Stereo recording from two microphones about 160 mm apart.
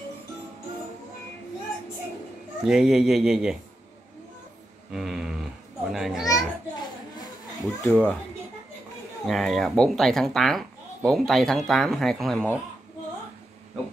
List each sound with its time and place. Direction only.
2.6 s speech: 5° right (ahead or behind)
4.9 s speech: centre (ahead or behind)
6.2 s children playing: 25° left (ahead or behind)
7.8 s a child's voice: 10° left (ahead or behind)
9.2 s speech: centre (ahead or behind)